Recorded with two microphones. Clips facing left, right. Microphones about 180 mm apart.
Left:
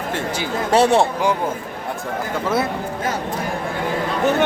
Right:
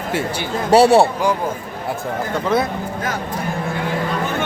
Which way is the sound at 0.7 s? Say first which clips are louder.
Right 4 dB; 10° right (ahead or behind).